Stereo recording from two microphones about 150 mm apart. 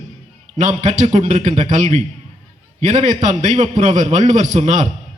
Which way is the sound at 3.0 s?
50° right (ahead or behind).